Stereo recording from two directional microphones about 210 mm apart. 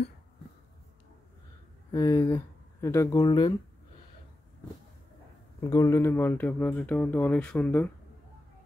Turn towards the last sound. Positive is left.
turn(degrees=10)  # may be behind; listen again after turning